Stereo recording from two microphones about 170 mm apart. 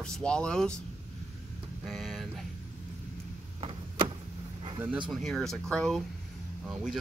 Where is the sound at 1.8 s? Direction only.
Centre (ahead or behind).